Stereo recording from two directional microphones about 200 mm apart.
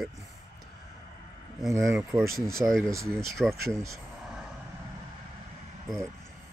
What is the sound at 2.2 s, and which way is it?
Speech, 45° right (ahead or behind).